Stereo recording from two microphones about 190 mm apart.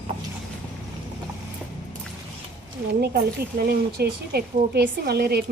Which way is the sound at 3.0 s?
55° right (ahead or behind).